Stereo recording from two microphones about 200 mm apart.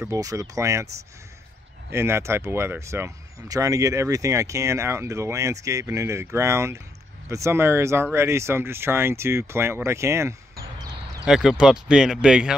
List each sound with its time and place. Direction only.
0.0 s speech: 15° right (ahead or behind)
1.9 s speech: 10° right (ahead or behind)
11.2 s speech: centre (ahead or behind)